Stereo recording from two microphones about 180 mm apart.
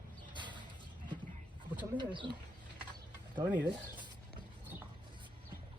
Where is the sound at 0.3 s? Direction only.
25° right (ahead or behind).